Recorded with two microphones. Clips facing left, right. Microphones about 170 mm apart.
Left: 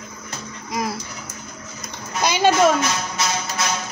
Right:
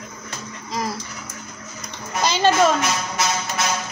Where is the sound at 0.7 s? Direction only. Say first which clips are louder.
Left 1 dB; 10° left (ahead or behind).